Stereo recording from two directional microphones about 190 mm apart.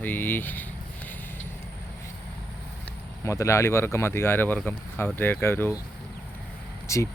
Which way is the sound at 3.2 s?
15° left (ahead or behind).